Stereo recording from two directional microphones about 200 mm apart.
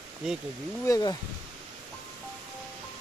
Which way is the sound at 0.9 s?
20° left (ahead or behind).